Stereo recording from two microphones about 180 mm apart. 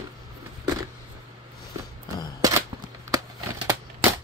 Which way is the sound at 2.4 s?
20° right (ahead or behind).